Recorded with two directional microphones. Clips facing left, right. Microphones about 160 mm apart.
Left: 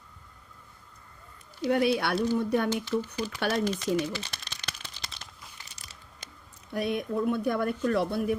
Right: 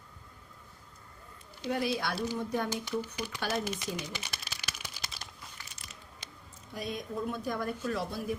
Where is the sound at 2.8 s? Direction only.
10° right (ahead or behind).